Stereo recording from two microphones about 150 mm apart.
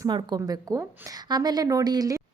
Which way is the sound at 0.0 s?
30° right (ahead or behind).